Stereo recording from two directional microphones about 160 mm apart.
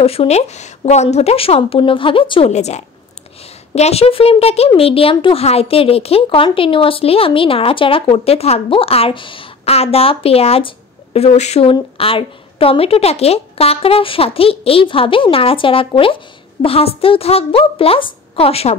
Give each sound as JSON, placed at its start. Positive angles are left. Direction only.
{"t": 0.0, "sound": "a woman's voice", "side_deg": 40}
{"t": 2.5, "sound": "a woman's voice", "side_deg": 45}